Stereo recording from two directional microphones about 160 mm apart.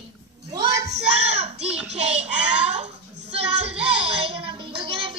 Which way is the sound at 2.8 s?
40° right (ahead or behind).